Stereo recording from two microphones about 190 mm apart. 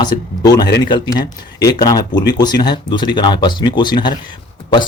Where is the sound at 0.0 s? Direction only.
20° left (ahead or behind).